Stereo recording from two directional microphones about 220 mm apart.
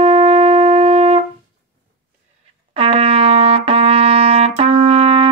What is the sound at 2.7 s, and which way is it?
Trumpet, 25° right (ahead or behind).